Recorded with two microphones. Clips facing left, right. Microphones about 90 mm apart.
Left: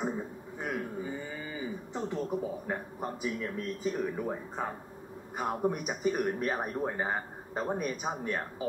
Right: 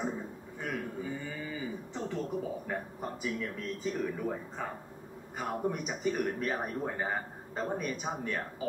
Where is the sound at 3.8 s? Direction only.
20° left (ahead or behind).